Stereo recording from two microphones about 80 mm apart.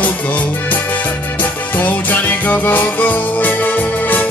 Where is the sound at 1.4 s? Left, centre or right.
Left.